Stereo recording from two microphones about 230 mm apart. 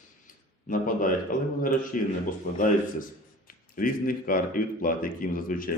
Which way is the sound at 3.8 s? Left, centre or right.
Left.